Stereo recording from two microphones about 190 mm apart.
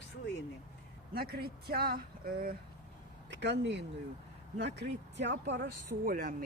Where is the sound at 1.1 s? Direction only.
55° right (ahead or behind).